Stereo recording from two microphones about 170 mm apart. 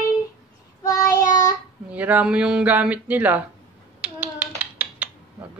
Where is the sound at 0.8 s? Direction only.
20° left (ahead or behind).